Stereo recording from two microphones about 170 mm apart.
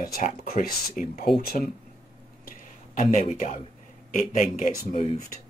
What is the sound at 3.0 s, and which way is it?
Speech, 50° left (ahead or behind).